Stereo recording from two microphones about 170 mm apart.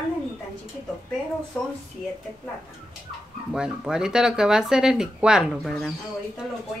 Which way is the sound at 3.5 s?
5° right (ahead or behind).